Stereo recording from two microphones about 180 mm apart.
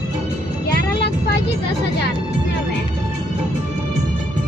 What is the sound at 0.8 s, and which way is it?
Vehicle, 70° left (ahead or behind).